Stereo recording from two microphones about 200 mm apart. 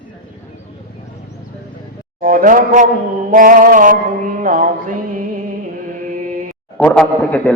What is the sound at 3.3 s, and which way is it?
Music, 45° right (ahead or behind).